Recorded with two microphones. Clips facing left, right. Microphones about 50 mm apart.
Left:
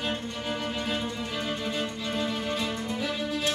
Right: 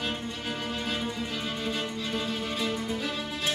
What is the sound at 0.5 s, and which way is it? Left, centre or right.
Music, centre.